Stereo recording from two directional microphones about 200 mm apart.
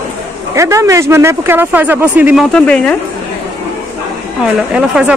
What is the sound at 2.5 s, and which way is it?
Speech, 5° left (ahead or behind).